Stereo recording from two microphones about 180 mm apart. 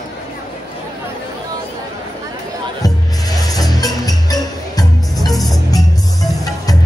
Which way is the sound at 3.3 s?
20° left (ahead or behind).